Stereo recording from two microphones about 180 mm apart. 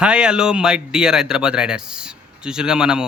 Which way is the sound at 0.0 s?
5° right (ahead or behind).